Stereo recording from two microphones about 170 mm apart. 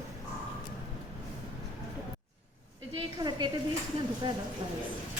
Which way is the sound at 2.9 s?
25° right (ahead or behind).